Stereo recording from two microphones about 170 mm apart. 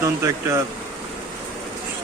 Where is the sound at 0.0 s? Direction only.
20° right (ahead or behind).